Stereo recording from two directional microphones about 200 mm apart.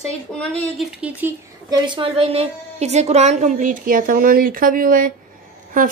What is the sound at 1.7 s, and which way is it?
A woman's voice, 20° right (ahead or behind).